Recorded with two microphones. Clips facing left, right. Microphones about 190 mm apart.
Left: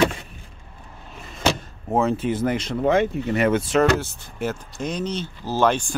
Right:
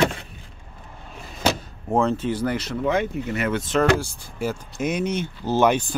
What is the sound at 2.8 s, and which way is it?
Speech, 30° left (ahead or behind).